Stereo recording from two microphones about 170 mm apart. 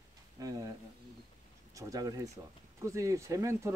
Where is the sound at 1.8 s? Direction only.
20° right (ahead or behind).